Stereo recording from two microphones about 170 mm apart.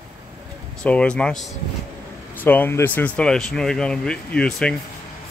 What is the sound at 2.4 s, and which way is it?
Speech, 10° left (ahead or behind).